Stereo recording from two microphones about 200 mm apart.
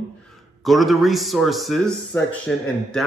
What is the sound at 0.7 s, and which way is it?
A man's voice, centre (ahead or behind).